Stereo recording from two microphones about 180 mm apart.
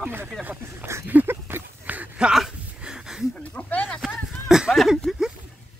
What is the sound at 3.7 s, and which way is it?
Speech, 10° left (ahead or behind).